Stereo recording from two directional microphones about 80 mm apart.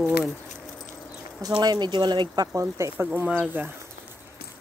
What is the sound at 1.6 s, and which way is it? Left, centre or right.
Speech, right.